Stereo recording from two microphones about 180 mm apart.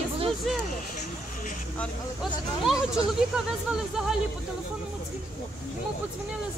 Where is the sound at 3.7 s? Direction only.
5° right (ahead or behind).